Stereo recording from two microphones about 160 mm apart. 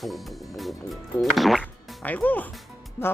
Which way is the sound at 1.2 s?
Centre (ahead or behind).